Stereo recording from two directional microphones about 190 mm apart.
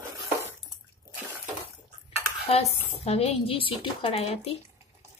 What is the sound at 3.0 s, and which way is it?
A woman's voice, 30° left (ahead or behind).